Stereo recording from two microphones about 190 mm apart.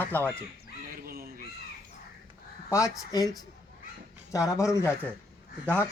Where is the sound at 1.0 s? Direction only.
50° right (ahead or behind).